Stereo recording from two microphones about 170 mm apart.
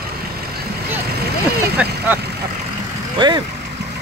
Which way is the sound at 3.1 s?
25° right (ahead or behind).